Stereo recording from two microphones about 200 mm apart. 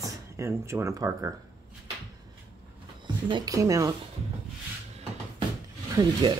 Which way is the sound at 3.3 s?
20° right (ahead or behind).